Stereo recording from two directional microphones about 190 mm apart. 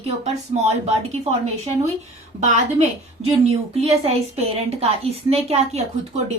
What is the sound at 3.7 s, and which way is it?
A woman's voice, 30° right (ahead or behind).